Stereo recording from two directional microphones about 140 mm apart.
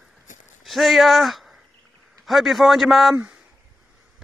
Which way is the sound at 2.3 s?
Centre (ahead or behind).